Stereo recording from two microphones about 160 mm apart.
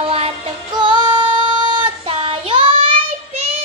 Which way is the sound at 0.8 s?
30° right (ahead or behind).